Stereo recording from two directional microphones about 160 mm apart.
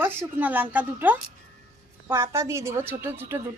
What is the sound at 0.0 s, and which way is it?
A woman's voice, 15° right (ahead or behind).